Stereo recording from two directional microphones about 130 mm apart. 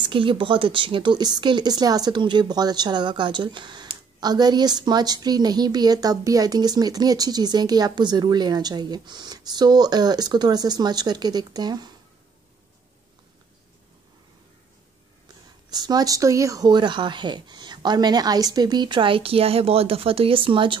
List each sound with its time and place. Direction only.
0.0 s speech: 40° right (ahead or behind)
15.7 s speech: 30° right (ahead or behind)